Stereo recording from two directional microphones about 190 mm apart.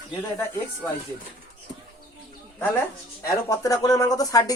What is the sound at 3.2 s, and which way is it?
Speech, 20° left (ahead or behind).